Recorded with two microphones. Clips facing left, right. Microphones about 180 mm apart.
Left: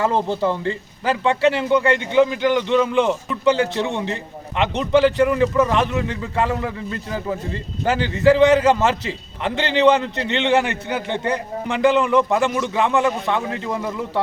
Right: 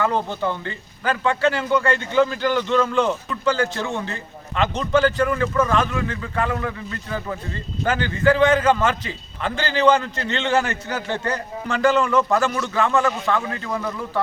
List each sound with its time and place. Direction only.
0.0 s a man's voice: 30° left (ahead or behind)